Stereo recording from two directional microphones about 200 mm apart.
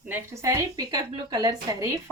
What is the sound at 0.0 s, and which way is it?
A woman's voice, 10° right (ahead or behind).